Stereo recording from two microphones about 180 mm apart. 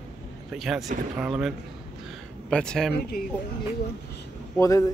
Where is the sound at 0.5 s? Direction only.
Centre (ahead or behind).